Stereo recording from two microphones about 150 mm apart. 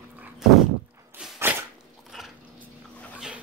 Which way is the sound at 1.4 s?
15° right (ahead or behind).